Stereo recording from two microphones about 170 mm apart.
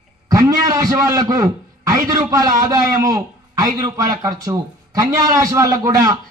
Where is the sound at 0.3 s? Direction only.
20° right (ahead or behind).